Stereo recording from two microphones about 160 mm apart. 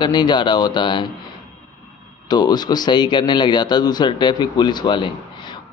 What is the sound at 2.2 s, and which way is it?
A man's voice, 25° left (ahead or behind).